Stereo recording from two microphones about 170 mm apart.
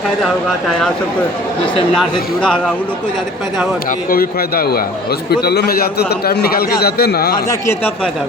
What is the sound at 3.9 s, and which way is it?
A man's voice, 60° left (ahead or behind).